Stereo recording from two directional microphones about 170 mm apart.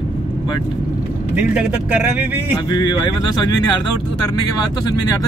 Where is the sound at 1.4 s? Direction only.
5° right (ahead or behind).